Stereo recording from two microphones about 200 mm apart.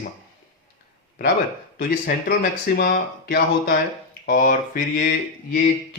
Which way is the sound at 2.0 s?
50° left (ahead or behind).